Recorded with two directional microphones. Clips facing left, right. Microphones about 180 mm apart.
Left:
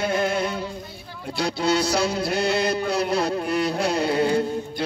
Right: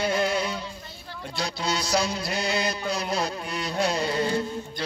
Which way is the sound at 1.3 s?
60° left (ahead or behind).